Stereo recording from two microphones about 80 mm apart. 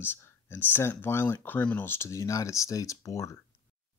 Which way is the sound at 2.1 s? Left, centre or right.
Left.